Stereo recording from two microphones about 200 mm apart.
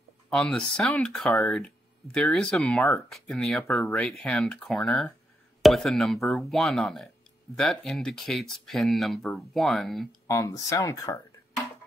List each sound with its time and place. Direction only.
0.3 s speech: centre (ahead or behind)
10.2 s speech: 15° left (ahead or behind)